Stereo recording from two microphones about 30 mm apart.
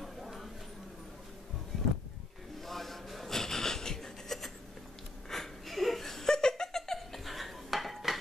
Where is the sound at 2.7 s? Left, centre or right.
Centre.